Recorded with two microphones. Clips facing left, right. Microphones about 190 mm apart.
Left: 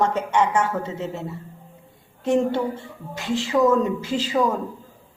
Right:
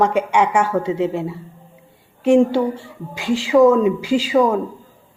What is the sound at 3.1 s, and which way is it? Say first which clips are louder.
Speech: right 7 dB; 15° right (ahead or behind).